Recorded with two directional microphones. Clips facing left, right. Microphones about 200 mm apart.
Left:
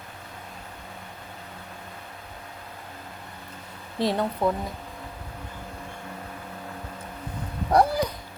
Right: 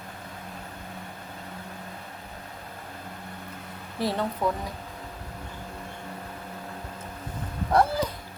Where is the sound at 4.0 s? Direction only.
15° left (ahead or behind).